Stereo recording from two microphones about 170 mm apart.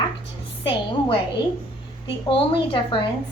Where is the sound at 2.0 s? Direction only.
30° left (ahead or behind).